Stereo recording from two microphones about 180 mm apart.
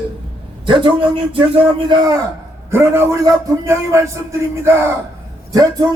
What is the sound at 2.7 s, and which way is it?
A man's voice, 15° right (ahead or behind).